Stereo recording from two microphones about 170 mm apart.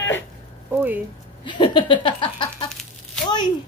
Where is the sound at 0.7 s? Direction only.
10° right (ahead or behind).